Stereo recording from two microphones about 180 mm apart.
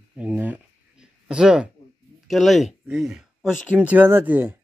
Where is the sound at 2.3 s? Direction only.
Centre (ahead or behind).